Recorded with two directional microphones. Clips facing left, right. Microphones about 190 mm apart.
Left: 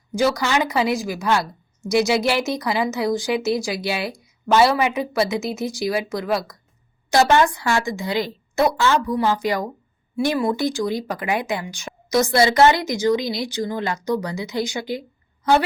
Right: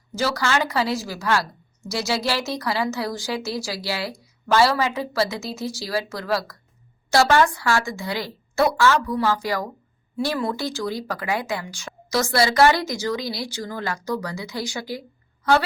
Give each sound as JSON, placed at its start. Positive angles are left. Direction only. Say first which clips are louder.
{"t": 0.1, "sound": "a woman's voice", "louder": "left 3 dB", "side_deg": 15}